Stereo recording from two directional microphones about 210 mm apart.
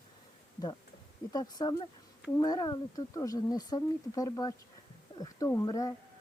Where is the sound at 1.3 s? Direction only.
20° left (ahead or behind).